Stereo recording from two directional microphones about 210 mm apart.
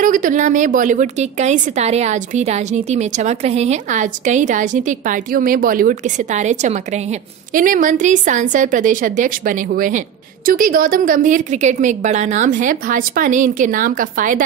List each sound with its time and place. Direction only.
0.0 s a woman's voice: 40° right (ahead or behind)